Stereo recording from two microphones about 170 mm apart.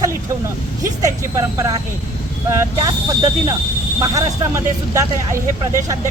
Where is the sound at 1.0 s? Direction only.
20° right (ahead or behind).